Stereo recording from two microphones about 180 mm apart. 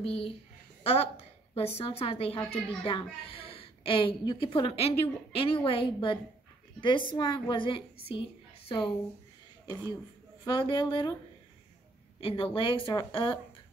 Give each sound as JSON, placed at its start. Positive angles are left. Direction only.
{"t": 0.0, "sound": "a woman's voice", "side_deg": 30}
{"t": 1.5, "sound": "a woman's voice", "side_deg": 35}
{"t": 10.4, "sound": "a woman's voice", "side_deg": 25}
{"t": 12.2, "sound": "a woman's voice", "side_deg": 30}